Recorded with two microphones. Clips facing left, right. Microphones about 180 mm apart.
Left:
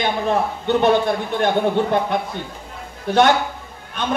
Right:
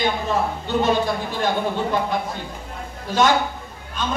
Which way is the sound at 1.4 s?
60° left (ahead or behind).